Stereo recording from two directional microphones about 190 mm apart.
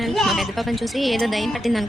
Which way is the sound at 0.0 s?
Centre (ahead or behind).